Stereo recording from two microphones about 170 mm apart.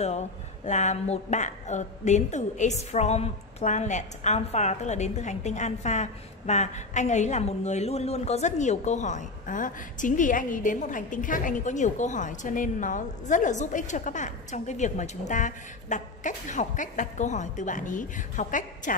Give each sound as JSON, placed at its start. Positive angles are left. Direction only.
{"t": 0.7, "sound": "a woman's voice", "side_deg": 45}